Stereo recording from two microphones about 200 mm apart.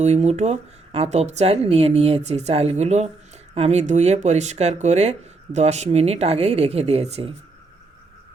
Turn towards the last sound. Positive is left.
turn(degrees=-30)  # may be behind; listen again after turning